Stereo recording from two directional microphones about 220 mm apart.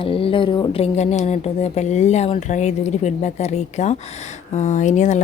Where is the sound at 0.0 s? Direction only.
25° left (ahead or behind).